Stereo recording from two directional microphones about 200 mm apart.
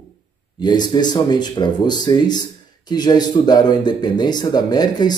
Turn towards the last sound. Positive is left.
turn(degrees=20)  # may be behind; listen again after turning